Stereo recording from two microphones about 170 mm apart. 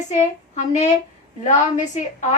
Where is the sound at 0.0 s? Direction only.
45° left (ahead or behind).